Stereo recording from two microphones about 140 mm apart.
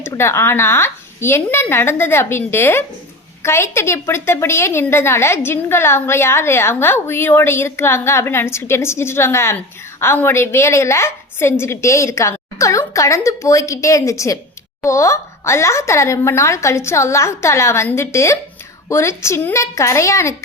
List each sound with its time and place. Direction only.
0.0 s a woman's voice: 20° left (ahead or behind)